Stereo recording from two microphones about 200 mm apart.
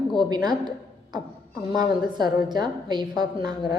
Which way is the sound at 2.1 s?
20° right (ahead or behind).